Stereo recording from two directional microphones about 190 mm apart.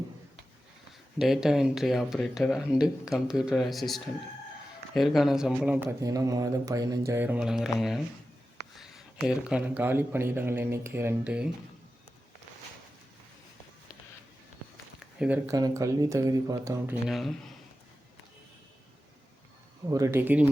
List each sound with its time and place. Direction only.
1.2 s speech: centre (ahead or behind)
6.0 s a man's voice: 20° right (ahead or behind)
14.9 s a sound: 5° right (ahead or behind)
15.4 s a man's voice: 15° right (ahead or behind); by 17.3 s centre (ahead or behind)
19.9 s a man's voice: 15° right (ahead or behind)